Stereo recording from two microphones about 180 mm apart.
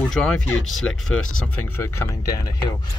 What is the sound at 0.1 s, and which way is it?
Speech, 5° left (ahead or behind).